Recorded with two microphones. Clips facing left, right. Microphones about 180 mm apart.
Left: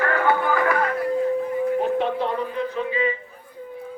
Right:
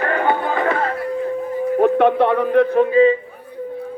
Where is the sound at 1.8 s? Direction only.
65° right (ahead or behind).